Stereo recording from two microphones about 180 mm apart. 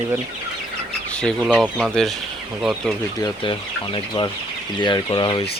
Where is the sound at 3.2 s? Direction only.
30° left (ahead or behind).